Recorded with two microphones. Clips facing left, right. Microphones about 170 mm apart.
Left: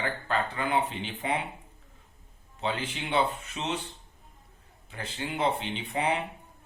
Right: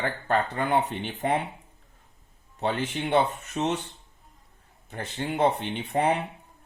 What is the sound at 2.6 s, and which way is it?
Speech, 45° right (ahead or behind).